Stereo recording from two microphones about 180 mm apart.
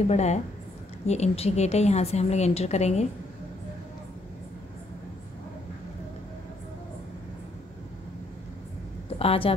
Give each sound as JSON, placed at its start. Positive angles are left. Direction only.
{"t": 0.1, "sound": "a woman's voice", "side_deg": 40}
{"t": 9.2, "sound": "a woman's voice", "side_deg": 35}